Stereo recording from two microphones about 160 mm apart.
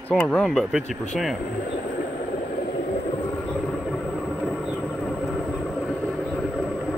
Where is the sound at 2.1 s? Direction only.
60° left (ahead or behind).